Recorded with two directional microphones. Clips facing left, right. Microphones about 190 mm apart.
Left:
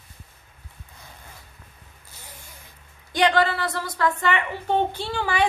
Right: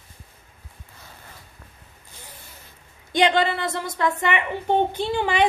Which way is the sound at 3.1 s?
20° right (ahead or behind).